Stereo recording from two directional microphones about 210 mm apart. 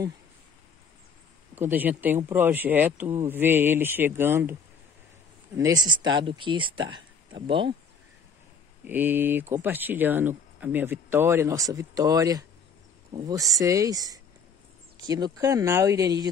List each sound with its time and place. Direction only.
1.5 s speech: 10° right (ahead or behind)
5.6 s speech: 20° right (ahead or behind)
8.8 s speech: 10° right (ahead or behind)